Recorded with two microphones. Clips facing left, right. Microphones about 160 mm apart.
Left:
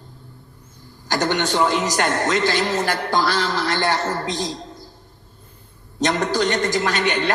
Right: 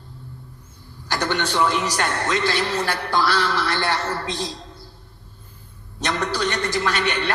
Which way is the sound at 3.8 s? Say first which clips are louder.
Left 3 dB; 45° left (ahead or behind).